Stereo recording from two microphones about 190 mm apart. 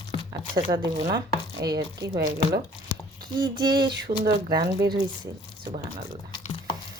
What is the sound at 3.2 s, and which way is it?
Speech, 20° right (ahead or behind).